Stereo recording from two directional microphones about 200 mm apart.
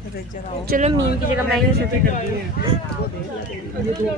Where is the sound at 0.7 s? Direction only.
45° right (ahead or behind).